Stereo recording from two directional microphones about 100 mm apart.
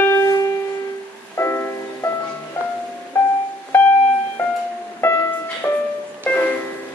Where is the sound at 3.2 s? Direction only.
15° left (ahead or behind).